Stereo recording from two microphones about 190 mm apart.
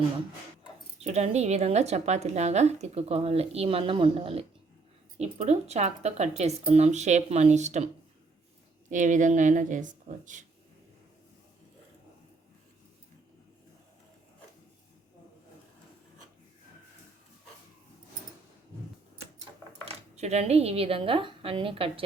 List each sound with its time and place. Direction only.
0.9 s a woman's voice: 35° right (ahead or behind)
8.9 s a woman's voice: 40° right (ahead or behind)
19.8 s speech: 35° right (ahead or behind)